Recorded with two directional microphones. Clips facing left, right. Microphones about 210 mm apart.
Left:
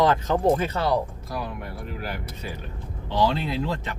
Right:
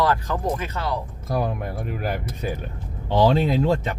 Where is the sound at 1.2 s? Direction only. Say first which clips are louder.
Right 7 dB; 50° right (ahead or behind).